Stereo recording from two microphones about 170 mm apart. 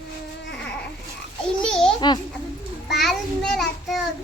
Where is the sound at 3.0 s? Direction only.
Centre (ahead or behind).